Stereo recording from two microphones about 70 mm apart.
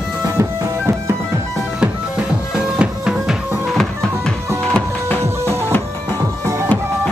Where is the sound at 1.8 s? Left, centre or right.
Centre.